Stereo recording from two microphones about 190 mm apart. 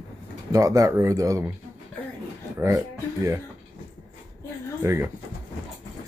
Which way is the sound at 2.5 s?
15° right (ahead or behind).